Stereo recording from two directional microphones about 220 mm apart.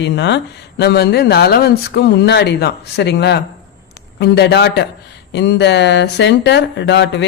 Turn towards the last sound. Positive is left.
turn(degrees=50)  # may be behind; listen again after turning